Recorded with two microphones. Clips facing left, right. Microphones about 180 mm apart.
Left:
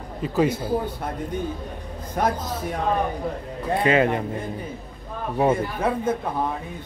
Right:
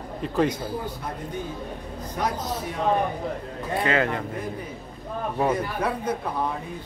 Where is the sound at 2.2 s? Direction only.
50° left (ahead or behind).